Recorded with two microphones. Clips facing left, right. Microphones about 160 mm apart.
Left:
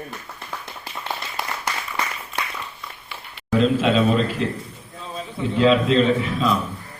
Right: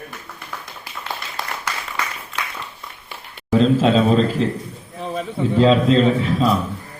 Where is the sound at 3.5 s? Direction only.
35° right (ahead or behind).